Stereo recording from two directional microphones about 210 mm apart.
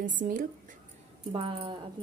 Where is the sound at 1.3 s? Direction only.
25° right (ahead or behind).